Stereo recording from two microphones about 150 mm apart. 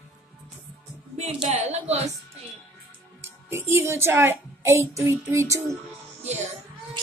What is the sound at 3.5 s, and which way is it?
A woman's voice, 15° right (ahead or behind).